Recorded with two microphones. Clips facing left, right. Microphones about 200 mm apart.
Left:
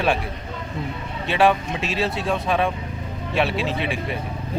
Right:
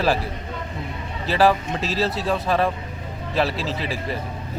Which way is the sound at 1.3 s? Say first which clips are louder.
Even; centre (ahead or behind).